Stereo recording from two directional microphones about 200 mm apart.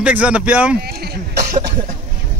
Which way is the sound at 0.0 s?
5° right (ahead or behind).